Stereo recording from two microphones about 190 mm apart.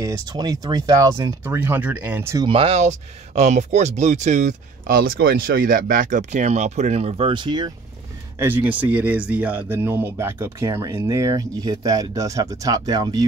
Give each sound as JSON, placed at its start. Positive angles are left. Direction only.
{"t": 0.0, "sound": "speech", "side_deg": -20}
{"t": 1.4, "sound": "speech", "side_deg": -10}
{"t": 2.4, "sound": "speech", "side_deg": -30}
{"t": 8.4, "sound": "speech", "side_deg": -10}